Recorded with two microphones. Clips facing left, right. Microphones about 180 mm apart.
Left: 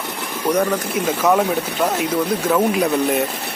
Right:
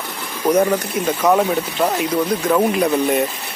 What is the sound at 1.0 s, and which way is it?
Speech, centre (ahead or behind).